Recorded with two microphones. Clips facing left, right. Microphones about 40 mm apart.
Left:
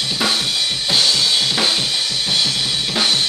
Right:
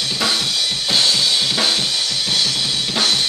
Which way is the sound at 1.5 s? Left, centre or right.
Centre.